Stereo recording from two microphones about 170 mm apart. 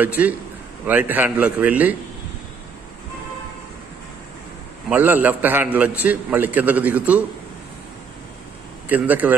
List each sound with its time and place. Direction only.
0.0 s a man's voice: 10° right (ahead or behind)
4.8 s a man's voice: 10° right (ahead or behind)
8.8 s a man's voice: 10° right (ahead or behind)